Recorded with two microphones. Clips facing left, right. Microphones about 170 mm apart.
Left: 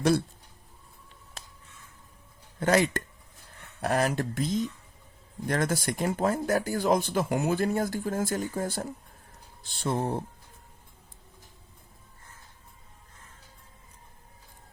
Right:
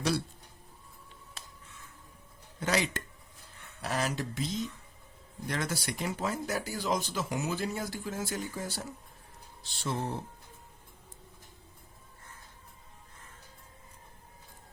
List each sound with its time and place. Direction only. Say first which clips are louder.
2.6 s speech: left 7 dB; 50° left (ahead or behind)